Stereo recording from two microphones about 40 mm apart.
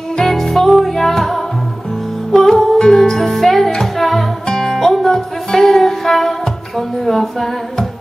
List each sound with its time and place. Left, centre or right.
0.1 s music: centre
2.5 s music: centre